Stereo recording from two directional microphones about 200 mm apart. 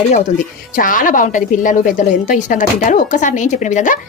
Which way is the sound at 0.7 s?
45° left (ahead or behind).